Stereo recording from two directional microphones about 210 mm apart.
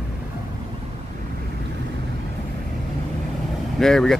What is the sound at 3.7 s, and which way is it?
Speech, centre (ahead or behind).